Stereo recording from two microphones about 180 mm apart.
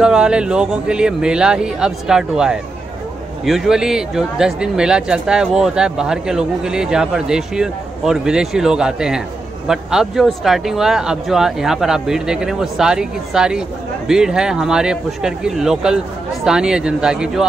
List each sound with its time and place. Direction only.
0.0 s speech: 5° right (ahead or behind)